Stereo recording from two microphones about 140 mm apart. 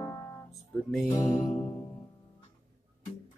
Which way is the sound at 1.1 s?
25° left (ahead or behind).